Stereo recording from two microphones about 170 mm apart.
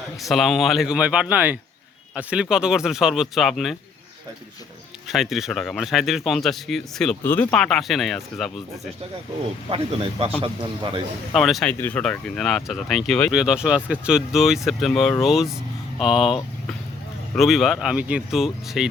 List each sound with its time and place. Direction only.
0.2 s speech: centre (ahead or behind)
5.1 s speech: centre (ahead or behind)
9.6 s a man's voice: 30° right (ahead or behind)
11.3 s speech: centre (ahead or behind)